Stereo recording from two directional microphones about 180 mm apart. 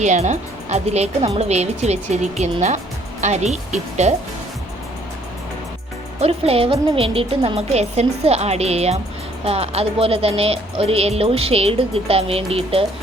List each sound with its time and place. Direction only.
0.0 s speech: 40° right (ahead or behind)
6.1 s speech: 35° right (ahead or behind)